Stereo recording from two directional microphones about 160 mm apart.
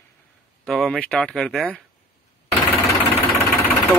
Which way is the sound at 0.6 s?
5° left (ahead or behind).